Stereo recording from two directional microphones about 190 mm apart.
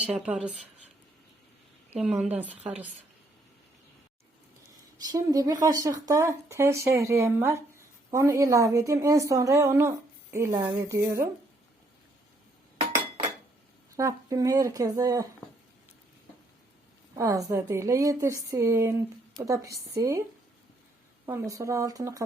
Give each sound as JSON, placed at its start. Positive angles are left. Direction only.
{"t": 0.0, "sound": "speech", "side_deg": -5}
{"t": 2.0, "sound": "speech", "side_deg": -5}
{"t": 4.9, "sound": "speech", "side_deg": -20}
{"t": 13.9, "sound": "speech", "side_deg": -15}
{"t": 17.2, "sound": "speech", "side_deg": -15}
{"t": 21.2, "sound": "speech", "side_deg": -15}